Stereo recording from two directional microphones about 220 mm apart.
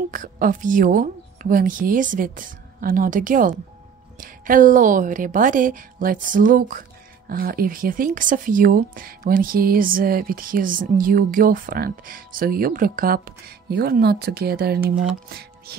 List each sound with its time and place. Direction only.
0.1 s speech: 40° right (ahead or behind)